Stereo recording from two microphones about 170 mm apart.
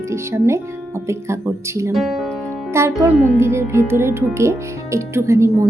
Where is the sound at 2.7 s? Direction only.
15° right (ahead or behind).